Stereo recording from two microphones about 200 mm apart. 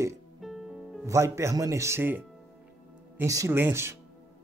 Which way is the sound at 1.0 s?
15° right (ahead or behind).